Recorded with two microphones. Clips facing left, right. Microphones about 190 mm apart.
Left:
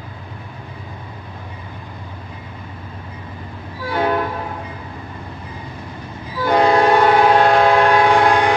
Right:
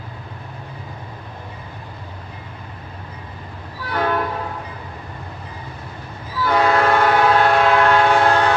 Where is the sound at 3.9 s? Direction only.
25° left (ahead or behind).